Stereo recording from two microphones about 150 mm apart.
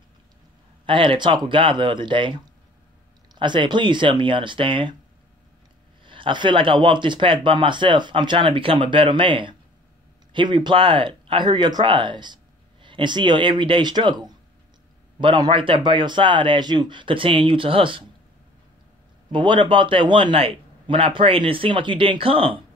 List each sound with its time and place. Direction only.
0.8 s speech: 35° right (ahead or behind)
6.0 s speech: 35° right (ahead or behind)
19.3 s speech: 30° right (ahead or behind)